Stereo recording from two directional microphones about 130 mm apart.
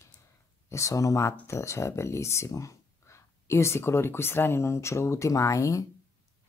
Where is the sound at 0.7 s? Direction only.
25° left (ahead or behind).